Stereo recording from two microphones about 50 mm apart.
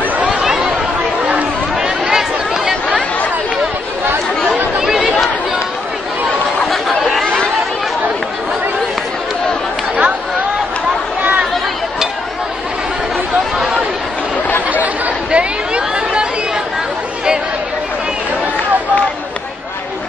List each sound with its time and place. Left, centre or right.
0.3 s chatter: centre
1.8 s chatter: centre
4.7 s chatter: centre
6.6 s chatter: centre
13.6 s a sound: centre
15.3 s chatter: right